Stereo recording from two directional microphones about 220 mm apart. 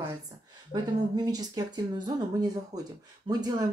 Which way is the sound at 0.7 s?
20° right (ahead or behind).